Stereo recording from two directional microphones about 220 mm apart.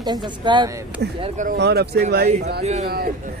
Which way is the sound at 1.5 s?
50° right (ahead or behind).